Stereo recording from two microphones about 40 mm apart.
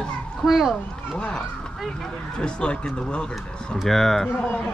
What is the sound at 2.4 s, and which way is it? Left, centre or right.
Speech, left.